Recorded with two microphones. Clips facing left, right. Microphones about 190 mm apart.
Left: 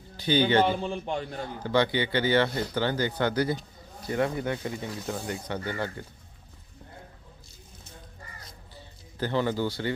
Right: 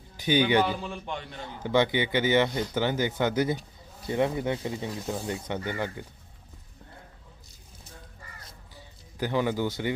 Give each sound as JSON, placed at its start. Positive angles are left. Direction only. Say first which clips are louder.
{"t": 0.2, "sound": "speech", "louder": "even", "side_deg": -15}
{"t": 0.7, "sound": "a man's voice", "louder": "left 4 dB", "side_deg": 30}
{"t": 1.6, "sound": "speech", "louder": "right 1 dB", "side_deg": -20}
{"t": 8.7, "sound": "music", "louder": "left 1 dB", "side_deg": -15}